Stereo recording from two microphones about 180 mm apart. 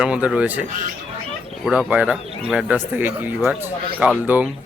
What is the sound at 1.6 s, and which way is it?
Speech, 10° right (ahead or behind).